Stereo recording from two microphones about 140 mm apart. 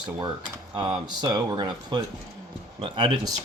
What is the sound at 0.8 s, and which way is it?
Speech, 30° right (ahead or behind).